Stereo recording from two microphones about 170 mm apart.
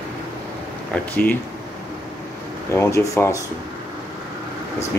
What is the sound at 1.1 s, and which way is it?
Speech, 10° left (ahead or behind).